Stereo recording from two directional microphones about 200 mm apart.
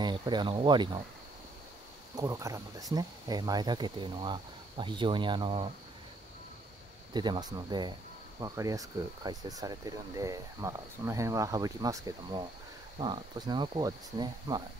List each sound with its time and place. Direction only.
0.0 s speech: 20° right (ahead or behind)
2.1 s speech: 15° right (ahead or behind)
7.2 s speech: 20° right (ahead or behind)